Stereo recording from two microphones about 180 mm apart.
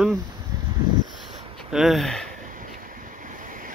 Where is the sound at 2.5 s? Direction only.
50° right (ahead or behind).